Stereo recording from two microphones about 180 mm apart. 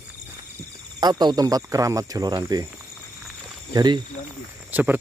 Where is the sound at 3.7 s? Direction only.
25° right (ahead or behind).